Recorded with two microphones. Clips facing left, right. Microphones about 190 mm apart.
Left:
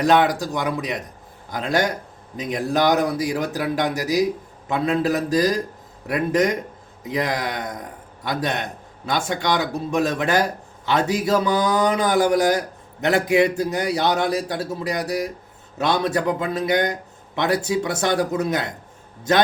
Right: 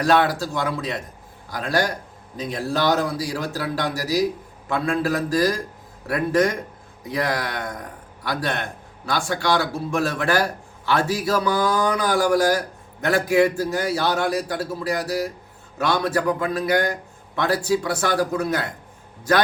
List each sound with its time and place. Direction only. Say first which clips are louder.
0.0 s a man's voice: left 2 dB; 20° left (ahead or behind)